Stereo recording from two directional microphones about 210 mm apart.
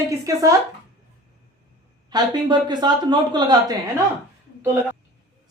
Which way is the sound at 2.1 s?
20° right (ahead or behind).